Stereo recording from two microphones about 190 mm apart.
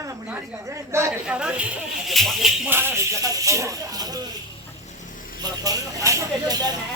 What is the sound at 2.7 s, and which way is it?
Speech, 10° right (ahead or behind).